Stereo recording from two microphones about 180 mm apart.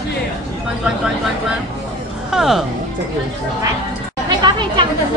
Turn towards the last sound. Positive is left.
turn(degrees=-25)  # may be behind; listen again after turning